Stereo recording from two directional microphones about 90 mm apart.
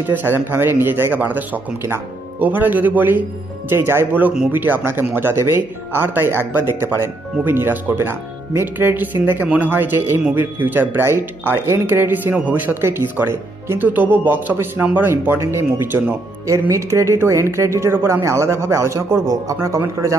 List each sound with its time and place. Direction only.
0.0 s speech: 20° right (ahead or behind)